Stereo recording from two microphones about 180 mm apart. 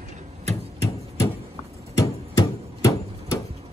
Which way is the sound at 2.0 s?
20° left (ahead or behind).